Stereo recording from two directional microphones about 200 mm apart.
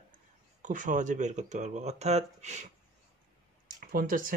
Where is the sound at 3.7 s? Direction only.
45° right (ahead or behind).